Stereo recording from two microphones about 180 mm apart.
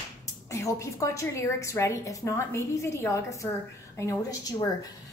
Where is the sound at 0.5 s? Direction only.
15° left (ahead or behind).